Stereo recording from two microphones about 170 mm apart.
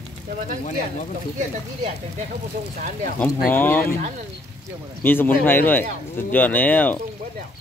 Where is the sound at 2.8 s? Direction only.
55° right (ahead or behind).